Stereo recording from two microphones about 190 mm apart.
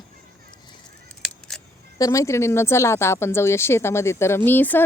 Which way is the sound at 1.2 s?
Centre (ahead or behind).